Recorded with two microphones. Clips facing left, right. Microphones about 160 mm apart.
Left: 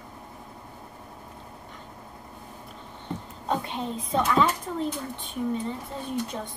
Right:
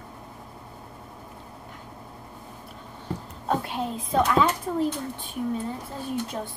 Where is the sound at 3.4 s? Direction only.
5° right (ahead or behind).